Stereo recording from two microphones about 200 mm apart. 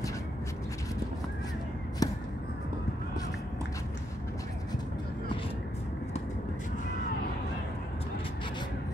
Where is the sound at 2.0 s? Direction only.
15° left (ahead or behind).